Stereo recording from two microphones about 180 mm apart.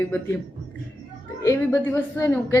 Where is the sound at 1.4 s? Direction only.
15° left (ahead or behind).